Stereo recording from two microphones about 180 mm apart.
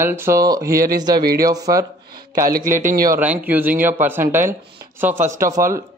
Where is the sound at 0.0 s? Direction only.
15° right (ahead or behind).